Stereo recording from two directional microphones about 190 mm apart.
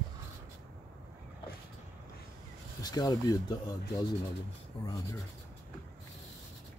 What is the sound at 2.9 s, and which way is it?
Speech, 20° left (ahead or behind).